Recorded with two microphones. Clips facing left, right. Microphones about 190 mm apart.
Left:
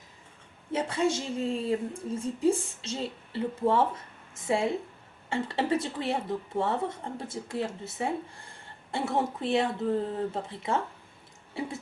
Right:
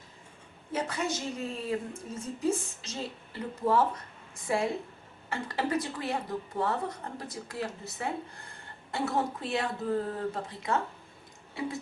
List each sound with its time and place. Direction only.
0.7 s a woman's voice: 30° left (ahead or behind)